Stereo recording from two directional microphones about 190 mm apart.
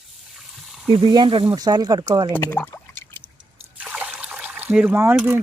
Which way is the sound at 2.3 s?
10° left (ahead or behind).